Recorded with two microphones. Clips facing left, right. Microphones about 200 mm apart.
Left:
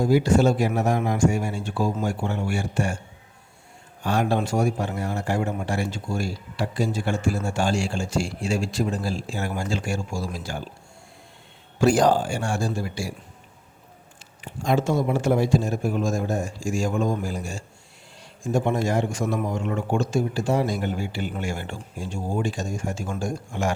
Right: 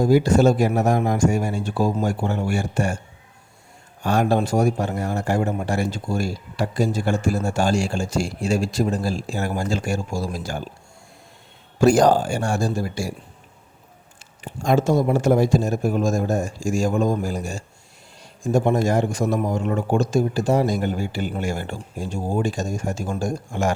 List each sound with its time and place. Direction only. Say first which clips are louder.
0.0 s speech: right 3 dB; 40° right (ahead or behind)
4.0 s a man's voice: right 3 dB; 45° right (ahead or behind)
11.8 s speech: right 3 dB; 45° right (ahead or behind)
14.4 s a man's voice: right 3 dB; 45° right (ahead or behind)